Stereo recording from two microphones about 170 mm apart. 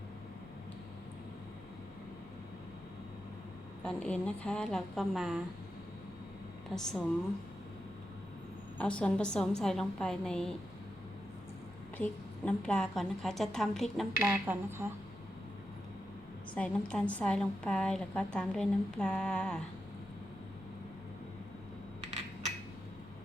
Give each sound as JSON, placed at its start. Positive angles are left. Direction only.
{"t": 3.8, "sound": "a woman's voice", "side_deg": 5}
{"t": 6.7, "sound": "a woman's voice", "side_deg": 5}
{"t": 8.8, "sound": "a woman's voice", "side_deg": 5}
{"t": 12.5, "sound": "a woman's voice", "side_deg": 5}
{"t": 14.2, "sound": "speech", "side_deg": -10}
{"t": 16.6, "sound": "a woman's voice", "side_deg": 5}
{"t": 22.0, "sound": "coin", "side_deg": -40}